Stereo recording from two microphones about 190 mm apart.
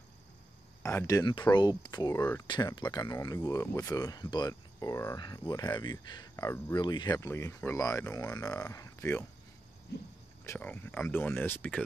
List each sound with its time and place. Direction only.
0.8 s speech: 15° left (ahead or behind)
10.4 s speech: 10° left (ahead or behind)